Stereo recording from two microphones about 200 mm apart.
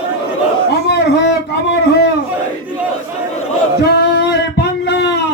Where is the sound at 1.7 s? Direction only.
55° left (ahead or behind).